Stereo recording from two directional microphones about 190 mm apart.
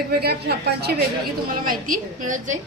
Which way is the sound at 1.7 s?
45° right (ahead or behind).